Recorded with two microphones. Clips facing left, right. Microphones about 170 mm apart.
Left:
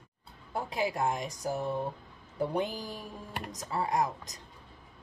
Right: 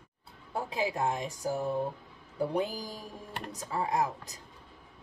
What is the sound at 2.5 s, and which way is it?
Speech, 35° right (ahead or behind).